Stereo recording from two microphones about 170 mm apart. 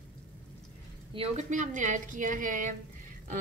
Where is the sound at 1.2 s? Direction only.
45° right (ahead or behind).